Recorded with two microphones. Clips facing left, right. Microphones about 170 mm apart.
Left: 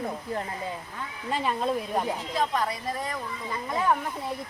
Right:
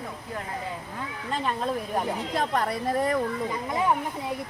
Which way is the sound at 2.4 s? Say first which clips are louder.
Right 1 dB; 60° right (ahead or behind).